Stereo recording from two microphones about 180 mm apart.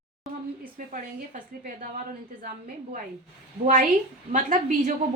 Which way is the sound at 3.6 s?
50° right (ahead or behind).